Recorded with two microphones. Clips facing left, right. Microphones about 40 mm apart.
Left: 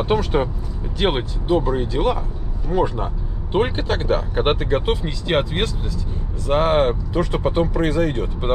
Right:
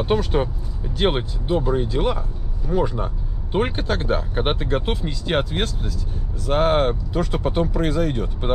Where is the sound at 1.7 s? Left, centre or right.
Left.